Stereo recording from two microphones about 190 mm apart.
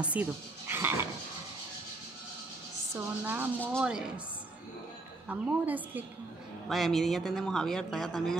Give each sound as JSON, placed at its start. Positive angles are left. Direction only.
{"t": 0.0, "sound": "dog", "side_deg": -10}
{"t": 2.9, "sound": "a woman's voice", "side_deg": -10}
{"t": 5.3, "sound": "a woman's voice", "side_deg": -10}